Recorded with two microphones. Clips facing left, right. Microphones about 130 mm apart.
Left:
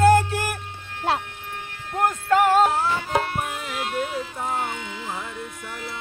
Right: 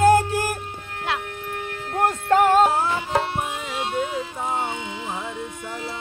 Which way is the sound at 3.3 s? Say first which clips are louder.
Right 1 dB; 25° right (ahead or behind).